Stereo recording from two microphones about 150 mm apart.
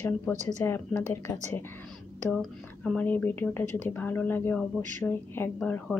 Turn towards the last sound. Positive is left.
turn(degrees=10)  # may be behind; listen again after turning